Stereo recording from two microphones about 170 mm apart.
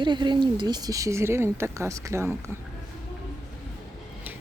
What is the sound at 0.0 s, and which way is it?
Speech, 25° right (ahead or behind).